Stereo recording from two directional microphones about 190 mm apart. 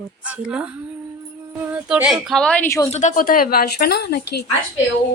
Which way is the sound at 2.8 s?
40° left (ahead or behind).